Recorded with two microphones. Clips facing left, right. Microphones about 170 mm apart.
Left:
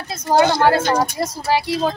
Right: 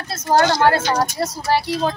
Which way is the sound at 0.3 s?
10° left (ahead or behind).